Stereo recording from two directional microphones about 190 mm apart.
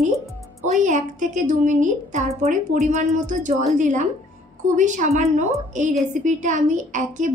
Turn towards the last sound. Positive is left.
turn(degrees=-40)  # may be behind; listen again after turning